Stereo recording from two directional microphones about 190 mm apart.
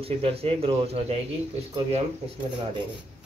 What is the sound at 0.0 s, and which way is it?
Speech, 30° right (ahead or behind).